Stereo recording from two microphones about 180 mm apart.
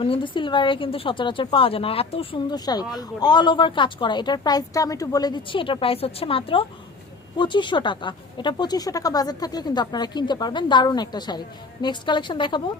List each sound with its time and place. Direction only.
0.0 s a woman's voice: 30° left (ahead or behind)